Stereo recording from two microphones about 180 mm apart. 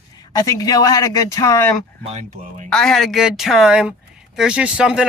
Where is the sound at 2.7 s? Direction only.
Centre (ahead or behind).